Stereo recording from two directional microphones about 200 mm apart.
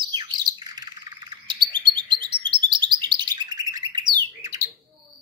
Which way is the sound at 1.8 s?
25° right (ahead or behind).